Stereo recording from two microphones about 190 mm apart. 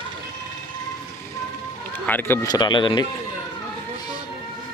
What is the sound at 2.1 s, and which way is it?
Speech, 10° left (ahead or behind).